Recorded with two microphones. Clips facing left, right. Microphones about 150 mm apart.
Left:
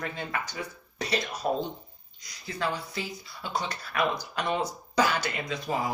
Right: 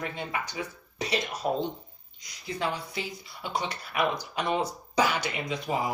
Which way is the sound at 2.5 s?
20° right (ahead or behind).